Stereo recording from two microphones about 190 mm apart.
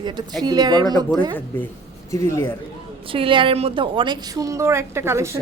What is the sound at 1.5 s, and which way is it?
Speech, 10° left (ahead or behind).